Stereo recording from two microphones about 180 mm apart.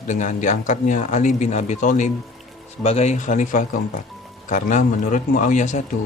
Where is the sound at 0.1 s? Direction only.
45° left (ahead or behind).